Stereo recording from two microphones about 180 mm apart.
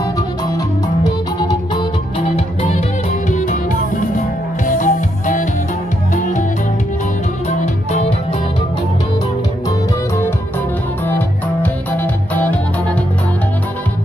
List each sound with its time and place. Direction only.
1.5 s music: 30° left (ahead or behind)
3.3 s music: 45° left (ahead or behind)
7.4 s music: 40° left (ahead or behind)
11.1 s music: 10° left (ahead or behind)